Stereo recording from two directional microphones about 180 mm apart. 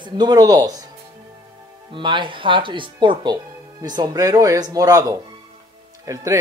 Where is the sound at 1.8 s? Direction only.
25° right (ahead or behind).